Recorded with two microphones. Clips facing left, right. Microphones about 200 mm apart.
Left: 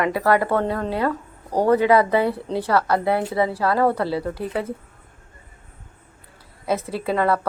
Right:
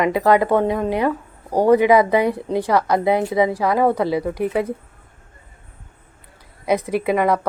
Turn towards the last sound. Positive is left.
turn(degrees=-15)  # may be behind; listen again after turning